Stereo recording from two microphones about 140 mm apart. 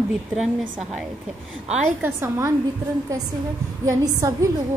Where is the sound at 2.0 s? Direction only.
15° right (ahead or behind).